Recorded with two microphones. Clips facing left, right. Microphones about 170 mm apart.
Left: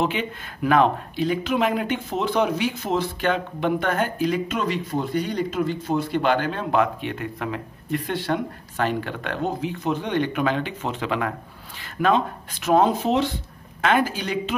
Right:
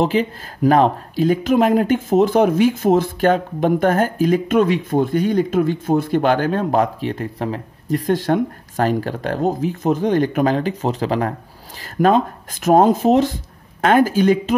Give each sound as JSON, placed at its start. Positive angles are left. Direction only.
{"t": 0.0, "sound": "speech", "side_deg": -35}